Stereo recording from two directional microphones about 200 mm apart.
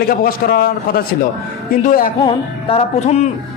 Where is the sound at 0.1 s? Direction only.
45° left (ahead or behind).